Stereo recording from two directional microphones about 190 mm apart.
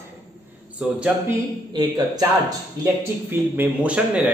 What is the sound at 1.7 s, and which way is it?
Speech, 20° right (ahead or behind).